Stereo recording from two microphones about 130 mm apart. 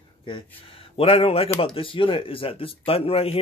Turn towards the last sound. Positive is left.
turn(degrees=50)  # may be behind; listen again after turning